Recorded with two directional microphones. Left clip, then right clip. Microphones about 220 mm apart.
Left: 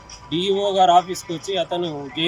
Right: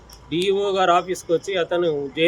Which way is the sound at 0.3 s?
Centre (ahead or behind).